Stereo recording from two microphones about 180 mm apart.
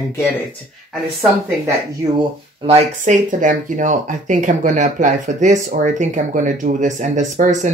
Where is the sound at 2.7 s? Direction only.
40° right (ahead or behind).